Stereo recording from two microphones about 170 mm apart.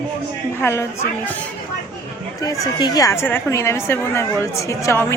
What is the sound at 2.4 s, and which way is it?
A woman's voice, 20° left (ahead or behind).